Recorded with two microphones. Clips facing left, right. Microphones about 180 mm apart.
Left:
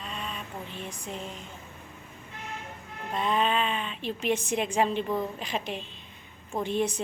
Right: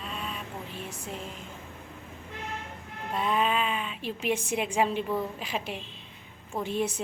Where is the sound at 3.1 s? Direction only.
5° right (ahead or behind).